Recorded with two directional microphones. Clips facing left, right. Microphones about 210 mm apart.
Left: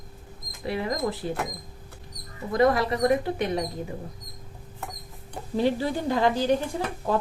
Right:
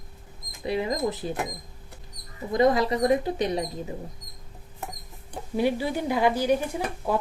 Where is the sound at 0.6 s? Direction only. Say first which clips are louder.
Right 1 dB; 20° right (ahead or behind).